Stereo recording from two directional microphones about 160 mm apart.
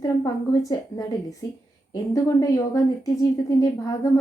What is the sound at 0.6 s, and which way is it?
A woman's voice, 20° left (ahead or behind).